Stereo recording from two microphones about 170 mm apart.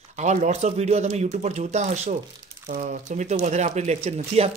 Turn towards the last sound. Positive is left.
turn(degrees=-40)  # may be behind; listen again after turning